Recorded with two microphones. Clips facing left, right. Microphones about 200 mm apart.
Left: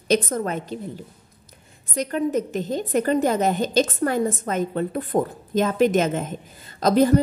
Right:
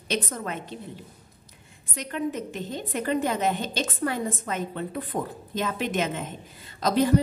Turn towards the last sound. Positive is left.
turn(degrees=45)  # may be behind; listen again after turning